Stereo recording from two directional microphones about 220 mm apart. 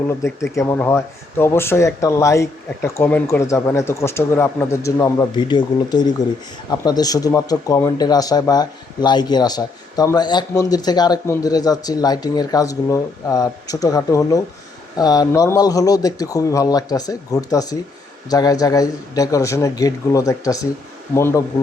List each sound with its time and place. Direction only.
0.5 s speech: 15° left (ahead or behind)